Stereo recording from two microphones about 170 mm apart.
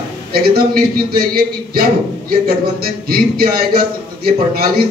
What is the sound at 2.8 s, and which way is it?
A man's voice, 60° right (ahead or behind).